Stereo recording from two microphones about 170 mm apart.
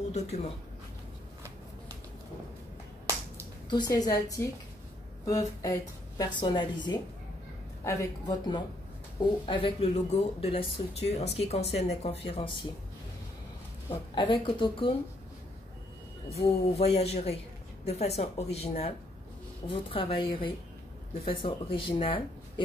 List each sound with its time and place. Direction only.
0.1 s speech: 40° left (ahead or behind)
3.7 s a woman's voice: 25° left (ahead or behind)
14.1 s a woman's voice: 30° left (ahead or behind)
16.3 s speech: 35° left (ahead or behind)
21.3 s speech: 30° left (ahead or behind)